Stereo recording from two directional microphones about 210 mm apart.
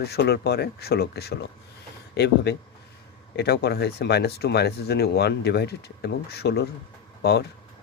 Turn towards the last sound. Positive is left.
turn(degrees=50)  # may be behind; listen again after turning